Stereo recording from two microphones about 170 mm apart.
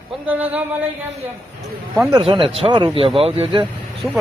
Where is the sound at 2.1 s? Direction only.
30° right (ahead or behind).